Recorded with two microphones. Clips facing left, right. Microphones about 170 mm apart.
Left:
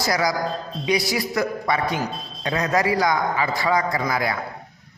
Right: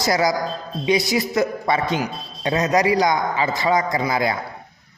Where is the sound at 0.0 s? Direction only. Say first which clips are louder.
Right 3 dB; 25° right (ahead or behind).